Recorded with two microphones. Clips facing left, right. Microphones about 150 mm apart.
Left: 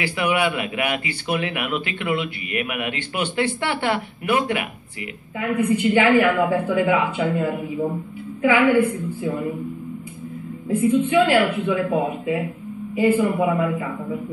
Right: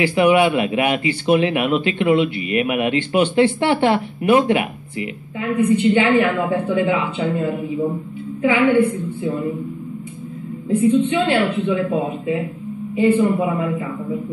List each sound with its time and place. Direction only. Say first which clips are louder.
0.0 s speech: right 7 dB; 25° right (ahead or behind)
10.7 s speech: right 2 dB; 25° right (ahead or behind)